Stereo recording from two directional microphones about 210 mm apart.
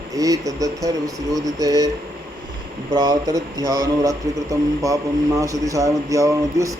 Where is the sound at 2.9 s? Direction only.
20° right (ahead or behind).